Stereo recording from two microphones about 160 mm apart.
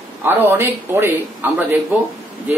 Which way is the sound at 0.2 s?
15° right (ahead or behind).